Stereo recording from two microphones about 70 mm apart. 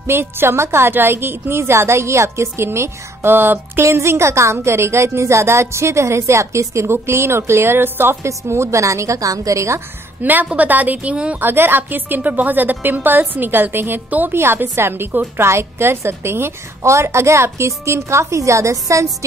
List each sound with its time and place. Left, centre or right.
0.0 s a woman's voice: right
10.2 s a woman's voice: right